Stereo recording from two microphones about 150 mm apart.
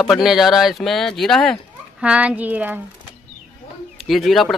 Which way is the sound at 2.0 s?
10° right (ahead or behind).